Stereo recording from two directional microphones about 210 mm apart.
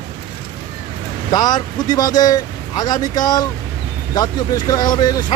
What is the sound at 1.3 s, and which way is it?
Speech, 20° left (ahead or behind).